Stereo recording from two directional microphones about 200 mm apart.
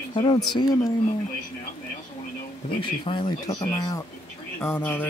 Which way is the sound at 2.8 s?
25° left (ahead or behind).